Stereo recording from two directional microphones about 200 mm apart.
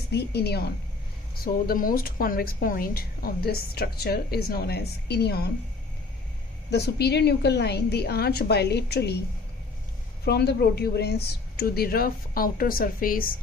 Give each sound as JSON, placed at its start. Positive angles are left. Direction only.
{"t": 0.1, "sound": "a woman's voice", "side_deg": 55}
{"t": 6.7, "sound": "a woman's voice", "side_deg": 55}
{"t": 10.2, "sound": "a woman's voice", "side_deg": 55}